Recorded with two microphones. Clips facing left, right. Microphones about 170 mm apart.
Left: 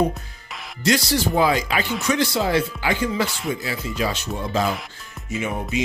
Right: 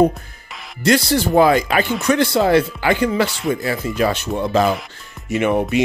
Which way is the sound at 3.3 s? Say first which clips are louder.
Right 5 dB; centre (ahead or behind).